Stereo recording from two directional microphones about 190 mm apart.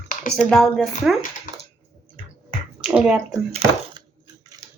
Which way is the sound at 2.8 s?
5° right (ahead or behind).